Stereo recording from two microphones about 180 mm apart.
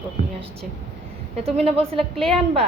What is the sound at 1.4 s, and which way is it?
A woman's voice, 35° right (ahead or behind).